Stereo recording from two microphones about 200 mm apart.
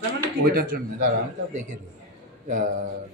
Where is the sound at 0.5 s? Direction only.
45° right (ahead or behind).